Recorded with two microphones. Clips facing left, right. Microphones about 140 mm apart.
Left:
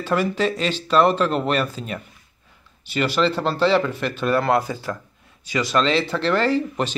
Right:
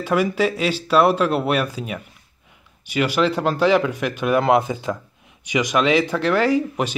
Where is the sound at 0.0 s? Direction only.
10° right (ahead or behind).